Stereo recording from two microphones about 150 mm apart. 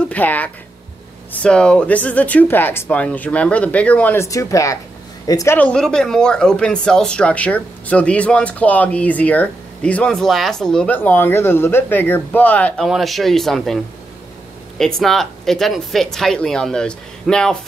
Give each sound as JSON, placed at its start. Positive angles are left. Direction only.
{"t": 0.1, "sound": "speech", "side_deg": 10}
{"t": 5.6, "sound": "speech", "side_deg": 5}
{"t": 14.8, "sound": "speech", "side_deg": 5}